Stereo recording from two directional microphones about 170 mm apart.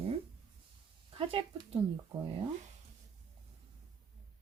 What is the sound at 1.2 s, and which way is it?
Speech, 35° right (ahead or behind).